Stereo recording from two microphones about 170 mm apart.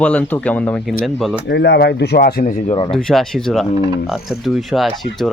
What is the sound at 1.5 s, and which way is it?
Speech, 90° left.